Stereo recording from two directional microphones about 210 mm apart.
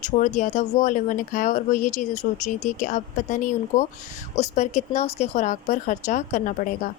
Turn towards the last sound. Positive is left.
turn(degrees=40)  # may be behind; listen again after turning